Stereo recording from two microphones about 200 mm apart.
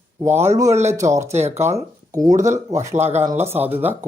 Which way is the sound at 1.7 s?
15° right (ahead or behind).